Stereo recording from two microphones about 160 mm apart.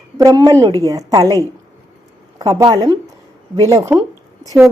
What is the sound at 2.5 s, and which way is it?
Speech, 20° right (ahead or behind).